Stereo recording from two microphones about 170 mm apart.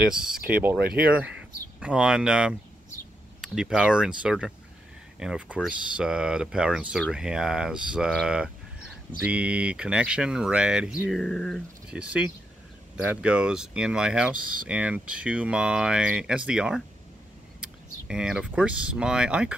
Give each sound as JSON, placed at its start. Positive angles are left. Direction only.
{"t": 0.1, "sound": "speech", "side_deg": -5}
{"t": 1.8, "sound": "speech", "side_deg": -5}